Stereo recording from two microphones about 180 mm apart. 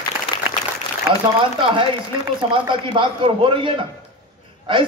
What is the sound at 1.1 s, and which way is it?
Speech, 10° right (ahead or behind).